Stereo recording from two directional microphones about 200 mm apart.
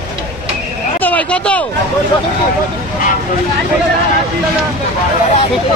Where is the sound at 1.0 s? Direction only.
5° left (ahead or behind).